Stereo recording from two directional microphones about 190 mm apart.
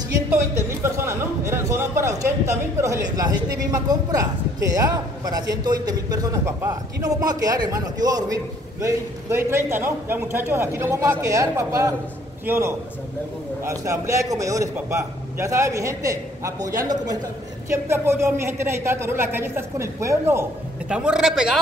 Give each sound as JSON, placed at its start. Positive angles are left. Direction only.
{"t": 0.3, "sound": "a man's voice", "side_deg": -15}